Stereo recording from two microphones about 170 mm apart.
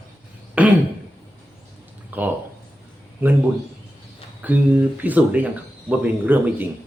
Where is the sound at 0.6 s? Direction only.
10° right (ahead or behind).